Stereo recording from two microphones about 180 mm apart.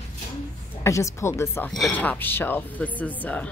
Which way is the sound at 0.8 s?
15° left (ahead or behind).